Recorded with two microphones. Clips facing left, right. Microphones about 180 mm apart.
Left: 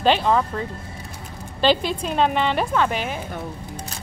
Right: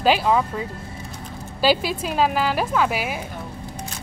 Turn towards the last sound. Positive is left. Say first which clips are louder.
# even
turn(degrees=-10)  # may be behind; listen again after turning